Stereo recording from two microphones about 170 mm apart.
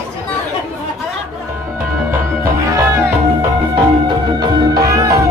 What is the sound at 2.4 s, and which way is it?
Music, 15° right (ahead or behind).